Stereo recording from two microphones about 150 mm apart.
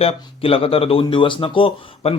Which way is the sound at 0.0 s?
40° left (ahead or behind).